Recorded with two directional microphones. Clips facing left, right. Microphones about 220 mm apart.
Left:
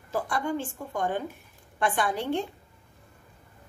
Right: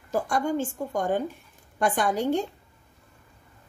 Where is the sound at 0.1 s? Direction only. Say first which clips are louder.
Right 3 dB; 45° right (ahead or behind).